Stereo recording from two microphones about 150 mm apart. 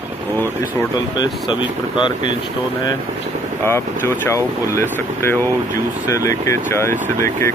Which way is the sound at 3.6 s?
15° left (ahead or behind).